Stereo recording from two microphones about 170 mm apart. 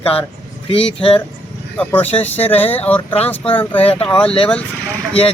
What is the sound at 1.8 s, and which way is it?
Speech, 10° left (ahead or behind).